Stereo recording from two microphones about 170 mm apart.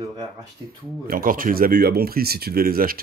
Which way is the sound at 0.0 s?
25° right (ahead or behind).